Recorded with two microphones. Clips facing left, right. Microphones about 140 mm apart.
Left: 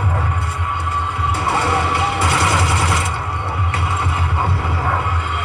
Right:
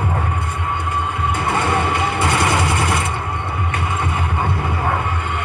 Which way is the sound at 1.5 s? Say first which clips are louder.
Left 1 dB; 15° right (ahead or behind).